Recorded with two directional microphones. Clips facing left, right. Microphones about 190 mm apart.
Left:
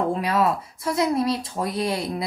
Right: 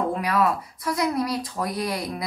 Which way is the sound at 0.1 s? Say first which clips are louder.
Left 1 dB; 25° left (ahead or behind).